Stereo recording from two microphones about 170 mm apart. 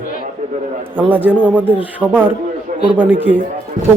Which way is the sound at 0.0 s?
60° left (ahead or behind).